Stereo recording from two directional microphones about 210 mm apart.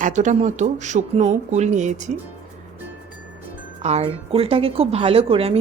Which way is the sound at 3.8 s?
30° right (ahead or behind).